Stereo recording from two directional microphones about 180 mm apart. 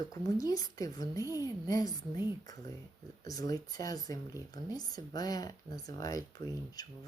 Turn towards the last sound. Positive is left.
turn(degrees=20)  # may be behind; listen again after turning